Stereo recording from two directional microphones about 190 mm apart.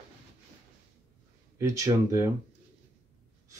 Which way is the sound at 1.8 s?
15° right (ahead or behind).